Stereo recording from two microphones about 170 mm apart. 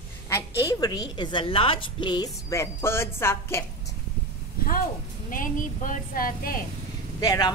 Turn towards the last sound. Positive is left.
turn(degrees=20)  # may be behind; listen again after turning